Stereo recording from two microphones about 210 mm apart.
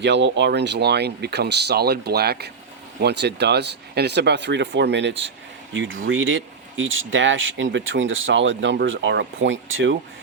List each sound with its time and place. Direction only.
0.0 s speech: 55° right (ahead or behind)